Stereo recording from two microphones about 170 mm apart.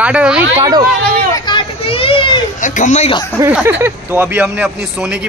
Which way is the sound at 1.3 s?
25° left (ahead or behind).